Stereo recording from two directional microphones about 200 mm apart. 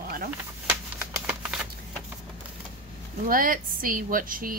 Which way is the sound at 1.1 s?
5° right (ahead or behind).